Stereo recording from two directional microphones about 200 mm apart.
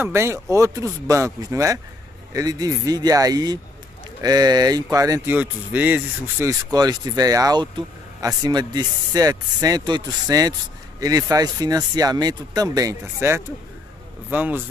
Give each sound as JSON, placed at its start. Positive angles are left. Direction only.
{"t": 0.0, "sound": "speech", "side_deg": -15}
{"t": 6.7, "sound": "speech", "side_deg": -20}